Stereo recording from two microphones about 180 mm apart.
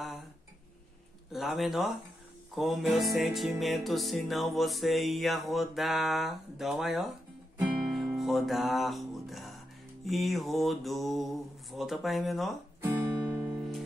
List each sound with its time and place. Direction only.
1.3 s music: centre (ahead or behind)
12.8 s music: 15° right (ahead or behind)
13.5 s music: centre (ahead or behind)